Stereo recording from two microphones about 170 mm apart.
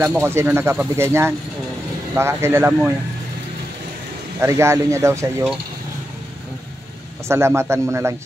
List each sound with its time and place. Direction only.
0.1 s speech: 15° right (ahead or behind)
4.4 s speech: 15° right (ahead or behind)
7.2 s speech: 15° right (ahead or behind)